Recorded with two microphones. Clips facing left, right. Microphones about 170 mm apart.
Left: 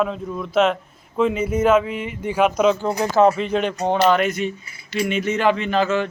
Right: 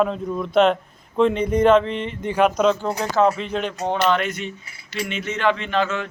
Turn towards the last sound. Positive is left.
turn(degrees=5)  # may be behind; listen again after turning